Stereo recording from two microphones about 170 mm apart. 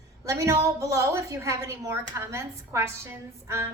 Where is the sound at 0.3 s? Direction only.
15° right (ahead or behind).